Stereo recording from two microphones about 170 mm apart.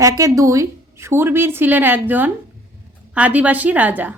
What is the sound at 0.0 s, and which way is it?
Speech, 20° right (ahead or behind).